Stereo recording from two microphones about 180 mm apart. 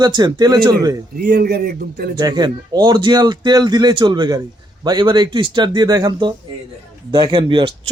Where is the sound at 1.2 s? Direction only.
60° right (ahead or behind).